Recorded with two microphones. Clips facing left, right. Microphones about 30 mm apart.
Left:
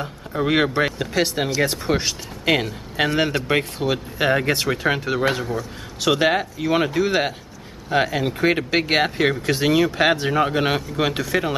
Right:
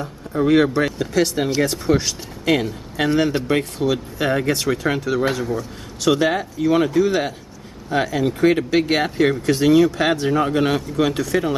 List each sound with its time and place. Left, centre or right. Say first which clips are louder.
0.3 s speech: right 4 dB; left
5.4 s a man's voice: right 2 dB; centre
6.1 s speech: even; left